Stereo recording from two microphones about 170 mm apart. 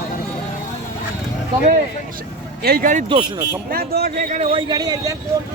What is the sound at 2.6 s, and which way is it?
Speech, 60° right (ahead or behind).